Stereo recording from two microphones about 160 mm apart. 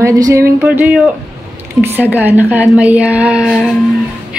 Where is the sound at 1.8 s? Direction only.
10° right (ahead or behind).